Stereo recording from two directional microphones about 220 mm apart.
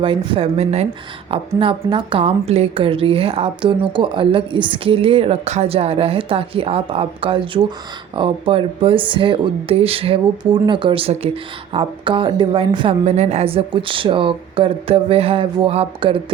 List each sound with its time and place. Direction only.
0.0 s speech: 25° right (ahead or behind)